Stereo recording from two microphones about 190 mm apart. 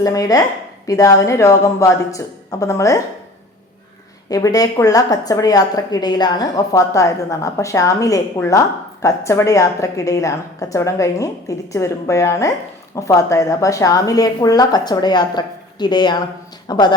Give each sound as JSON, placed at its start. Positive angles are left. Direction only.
{"t": 0.0, "sound": "a woman's voice", "side_deg": 20}
{"t": 4.3, "sound": "a woman's voice", "side_deg": 20}